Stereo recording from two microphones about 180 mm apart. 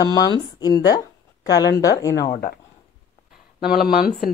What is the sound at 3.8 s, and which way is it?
Speech, 55° left (ahead or behind).